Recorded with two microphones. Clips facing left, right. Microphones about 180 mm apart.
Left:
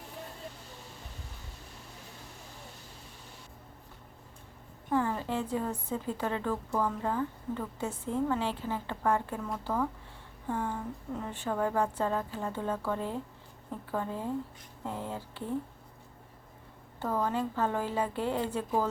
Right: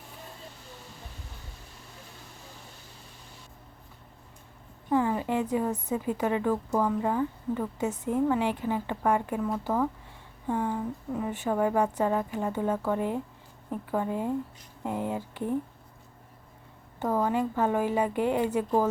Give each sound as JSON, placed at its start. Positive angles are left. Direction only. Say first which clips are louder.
{"t": 4.9, "sound": "a woman's voice", "louder": "right 4 dB", "side_deg": -15}
{"t": 17.0, "sound": "a woman's voice", "louder": "right 4 dB", "side_deg": -15}